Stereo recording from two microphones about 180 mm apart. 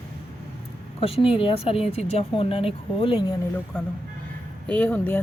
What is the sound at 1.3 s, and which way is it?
Speech, 30° left (ahead or behind).